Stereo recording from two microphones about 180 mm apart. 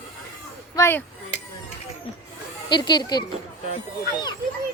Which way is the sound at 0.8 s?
15° left (ahead or behind).